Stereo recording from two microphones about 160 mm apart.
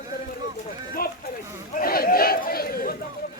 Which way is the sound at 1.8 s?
70° left (ahead or behind).